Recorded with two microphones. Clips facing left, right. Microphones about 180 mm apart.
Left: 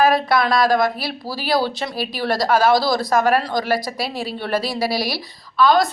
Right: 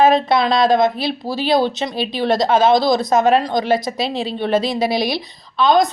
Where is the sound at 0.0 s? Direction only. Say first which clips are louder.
Right 3 dB; 25° right (ahead or behind).